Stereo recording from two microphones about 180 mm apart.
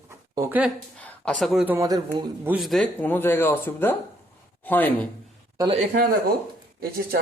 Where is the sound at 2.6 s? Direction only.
Centre (ahead or behind).